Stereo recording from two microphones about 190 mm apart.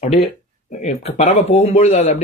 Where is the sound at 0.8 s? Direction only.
40° left (ahead or behind).